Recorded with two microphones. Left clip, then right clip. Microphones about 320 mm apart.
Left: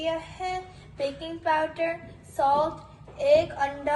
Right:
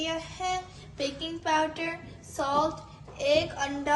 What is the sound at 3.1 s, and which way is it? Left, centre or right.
Speech, right.